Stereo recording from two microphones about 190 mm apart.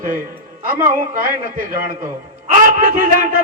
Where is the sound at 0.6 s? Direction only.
50° right (ahead or behind).